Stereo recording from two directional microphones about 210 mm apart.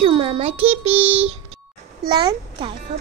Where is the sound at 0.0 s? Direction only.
25° right (ahead or behind).